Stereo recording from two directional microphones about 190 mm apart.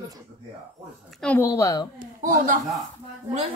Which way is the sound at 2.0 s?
45° right (ahead or behind).